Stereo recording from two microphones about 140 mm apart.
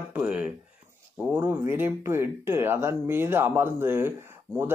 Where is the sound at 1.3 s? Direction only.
15° right (ahead or behind).